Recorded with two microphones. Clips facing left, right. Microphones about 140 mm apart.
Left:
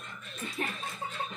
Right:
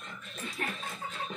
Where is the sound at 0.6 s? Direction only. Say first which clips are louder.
Left 2 dB; 25° left (ahead or behind).